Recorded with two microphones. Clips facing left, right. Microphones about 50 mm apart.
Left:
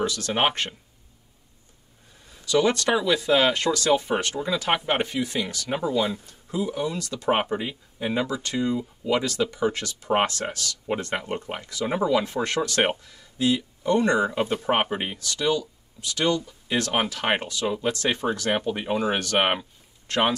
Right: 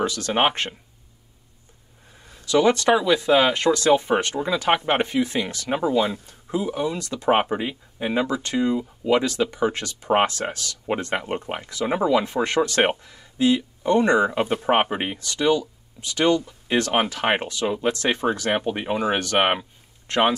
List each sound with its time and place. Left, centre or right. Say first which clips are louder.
0.1 s speech: right 3 dB; centre
2.5 s speech: right 4 dB; centre
5.0 s speech: right 4 dB; right
19.3 s speech: right 2 dB; centre
20.1 s speech: right 3 dB; right